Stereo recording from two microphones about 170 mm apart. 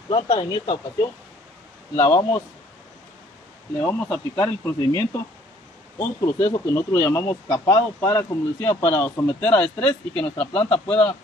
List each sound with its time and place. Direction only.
0.1 s speech: 30° left (ahead or behind)
3.8 s speech: 15° left (ahead or behind)